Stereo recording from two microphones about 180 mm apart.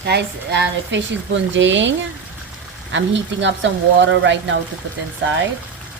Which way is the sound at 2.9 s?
90° right.